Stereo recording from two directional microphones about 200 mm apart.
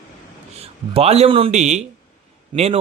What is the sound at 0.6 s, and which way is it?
A man's voice, 30° right (ahead or behind).